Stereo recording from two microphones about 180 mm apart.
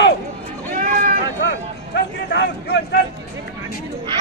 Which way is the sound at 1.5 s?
75° left (ahead or behind).